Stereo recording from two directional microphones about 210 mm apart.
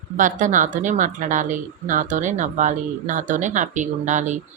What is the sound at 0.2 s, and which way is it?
A woman's voice, 40° right (ahead or behind).